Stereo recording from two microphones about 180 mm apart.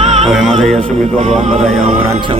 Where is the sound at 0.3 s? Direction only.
Centre (ahead or behind).